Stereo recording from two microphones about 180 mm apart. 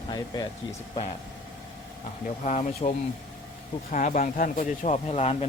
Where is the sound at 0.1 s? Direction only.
20° left (ahead or behind).